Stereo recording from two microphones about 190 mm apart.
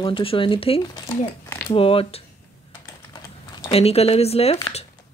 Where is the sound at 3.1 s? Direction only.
25° left (ahead or behind).